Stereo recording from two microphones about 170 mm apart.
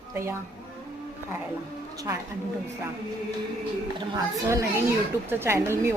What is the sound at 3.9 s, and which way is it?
A child's voice, 20° right (ahead or behind).